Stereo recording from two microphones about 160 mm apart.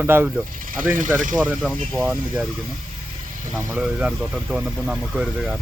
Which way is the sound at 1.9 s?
15° right (ahead or behind).